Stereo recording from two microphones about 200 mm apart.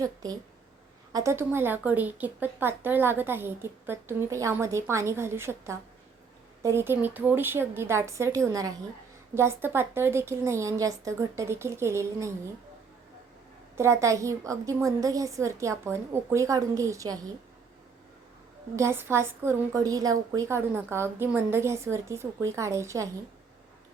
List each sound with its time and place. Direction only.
0.0 s a woman's voice: 20° right (ahead or behind)
13.7 s a woman's voice: 15° right (ahead or behind)
18.8 s a woman's voice: 10° right (ahead or behind)